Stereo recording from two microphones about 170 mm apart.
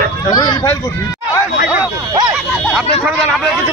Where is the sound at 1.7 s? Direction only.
20° right (ahead or behind).